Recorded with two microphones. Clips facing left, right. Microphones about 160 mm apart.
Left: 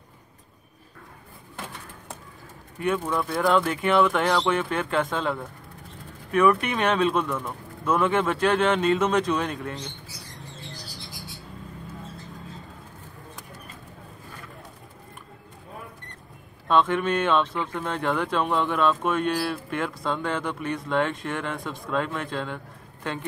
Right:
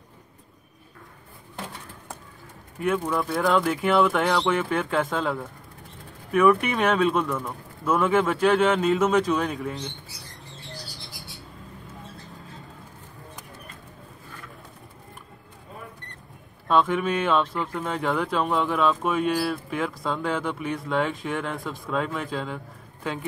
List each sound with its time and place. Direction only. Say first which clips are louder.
2.8 s speech: right 1 dB; centre (ahead or behind)
16.6 s speech: even; 5° right (ahead or behind)